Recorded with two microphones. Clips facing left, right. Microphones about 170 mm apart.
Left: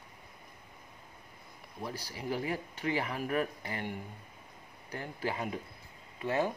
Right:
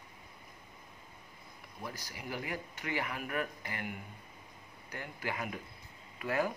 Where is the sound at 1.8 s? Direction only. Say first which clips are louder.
Left 6 dB; 30° left (ahead or behind).